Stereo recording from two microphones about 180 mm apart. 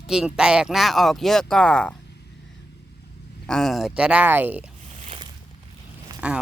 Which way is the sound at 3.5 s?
Centre (ahead or behind).